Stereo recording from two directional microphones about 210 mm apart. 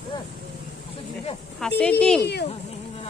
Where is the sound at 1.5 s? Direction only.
5° left (ahead or behind).